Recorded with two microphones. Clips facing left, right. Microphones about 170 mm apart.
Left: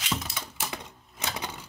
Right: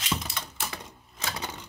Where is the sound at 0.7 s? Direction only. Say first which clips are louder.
Left 2 dB; 15° left (ahead or behind).